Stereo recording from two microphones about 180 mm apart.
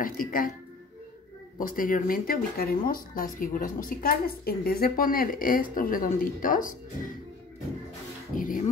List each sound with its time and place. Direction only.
0.0 s speech: 50° left (ahead or behind)
1.6 s speech: 50° left (ahead or behind)
8.4 s speech: 50° left (ahead or behind)